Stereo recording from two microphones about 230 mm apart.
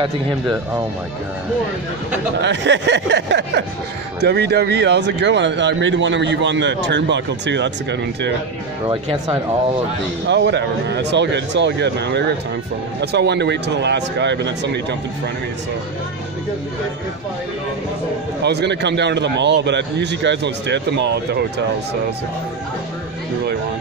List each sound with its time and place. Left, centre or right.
2.4 s speech: right
8.8 s speech: right
10.2 s speech: right
18.4 s speech: right